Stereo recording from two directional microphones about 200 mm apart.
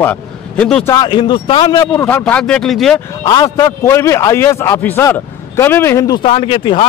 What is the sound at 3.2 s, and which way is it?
A man's voice, 20° left (ahead or behind).